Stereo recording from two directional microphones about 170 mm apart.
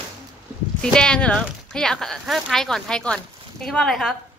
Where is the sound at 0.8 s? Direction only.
5° left (ahead or behind).